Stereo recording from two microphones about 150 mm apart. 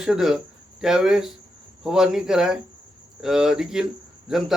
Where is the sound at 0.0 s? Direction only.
5° right (ahead or behind).